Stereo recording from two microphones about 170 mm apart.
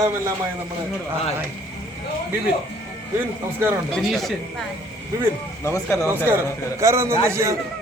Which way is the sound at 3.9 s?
Centre (ahead or behind).